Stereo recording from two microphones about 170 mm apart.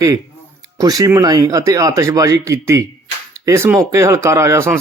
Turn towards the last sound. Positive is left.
turn(degrees=-15)  # may be behind; listen again after turning